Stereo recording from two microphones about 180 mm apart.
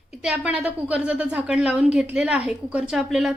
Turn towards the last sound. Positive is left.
turn(degrees=0)  # may be behind; listen again after turning